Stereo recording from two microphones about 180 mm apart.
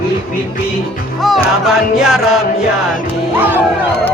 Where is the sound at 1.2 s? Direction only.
Centre (ahead or behind).